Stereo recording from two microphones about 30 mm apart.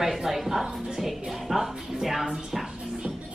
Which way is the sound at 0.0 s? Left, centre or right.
Centre.